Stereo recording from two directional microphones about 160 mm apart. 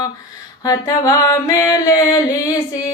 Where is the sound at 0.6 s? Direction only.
20° left (ahead or behind).